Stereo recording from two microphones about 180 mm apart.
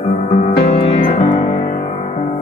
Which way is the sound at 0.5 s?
55° left (ahead or behind).